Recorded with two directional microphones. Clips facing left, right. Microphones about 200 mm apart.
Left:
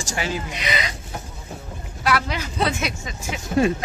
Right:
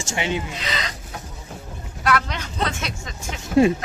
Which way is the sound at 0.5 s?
15° left (ahead or behind).